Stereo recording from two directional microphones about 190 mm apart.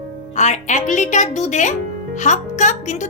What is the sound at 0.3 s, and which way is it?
A woman's voice, 40° left (ahead or behind).